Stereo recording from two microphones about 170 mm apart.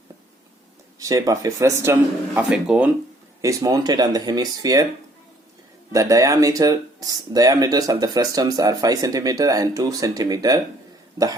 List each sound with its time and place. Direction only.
0.9 s speech: 20° right (ahead or behind)
2.3 s speech: 5° right (ahead or behind)
3.4 s speech: 20° right (ahead or behind)
5.9 s speech: 20° right (ahead or behind)